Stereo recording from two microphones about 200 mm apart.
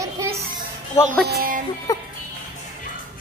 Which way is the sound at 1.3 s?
45° right (ahead or behind).